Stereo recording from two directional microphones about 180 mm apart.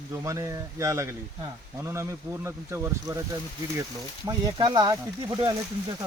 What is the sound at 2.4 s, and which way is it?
Speech, 15° right (ahead or behind).